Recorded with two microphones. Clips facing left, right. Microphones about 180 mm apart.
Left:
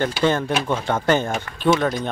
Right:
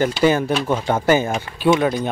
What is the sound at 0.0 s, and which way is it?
Speech, 10° right (ahead or behind).